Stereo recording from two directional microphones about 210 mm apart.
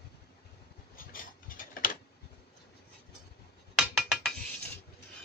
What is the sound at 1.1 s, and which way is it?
Tick-tock, 40° left (ahead or behind).